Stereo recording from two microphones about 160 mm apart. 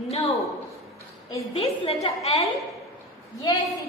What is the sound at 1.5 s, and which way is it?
Speech, 40° left (ahead or behind).